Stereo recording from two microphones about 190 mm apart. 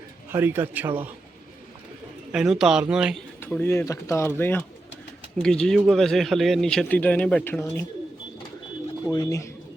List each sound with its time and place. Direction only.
0.3 s a man's voice: 10° right (ahead or behind)
2.3 s a man's voice: 5° right (ahead or behind)
3.4 s a man's voice: 10° left (ahead or behind)
9.1 s speech: 20° left (ahead or behind)